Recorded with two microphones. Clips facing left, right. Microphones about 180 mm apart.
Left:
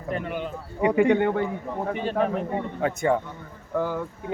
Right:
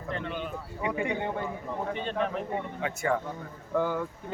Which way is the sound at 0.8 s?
70° left (ahead or behind).